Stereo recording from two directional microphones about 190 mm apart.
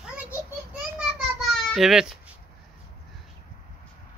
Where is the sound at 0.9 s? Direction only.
Centre (ahead or behind).